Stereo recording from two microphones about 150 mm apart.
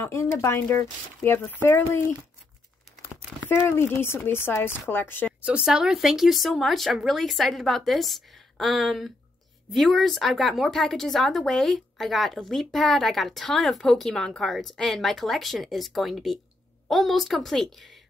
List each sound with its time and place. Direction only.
0.0 s speech: 15° left (ahead or behind)
3.4 s speech: 15° left (ahead or behind)
5.4 s speech: 5° right (ahead or behind)